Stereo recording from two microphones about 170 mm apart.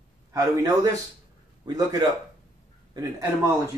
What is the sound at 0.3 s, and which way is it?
Speech, 20° right (ahead or behind).